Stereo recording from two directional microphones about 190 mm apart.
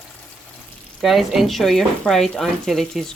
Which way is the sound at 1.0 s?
Centre (ahead or behind).